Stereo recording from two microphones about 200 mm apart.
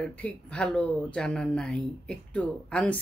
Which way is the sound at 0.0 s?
5° left (ahead or behind).